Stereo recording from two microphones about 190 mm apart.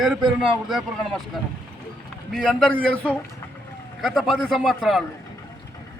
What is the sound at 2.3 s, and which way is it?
A man's voice, 5° left (ahead or behind).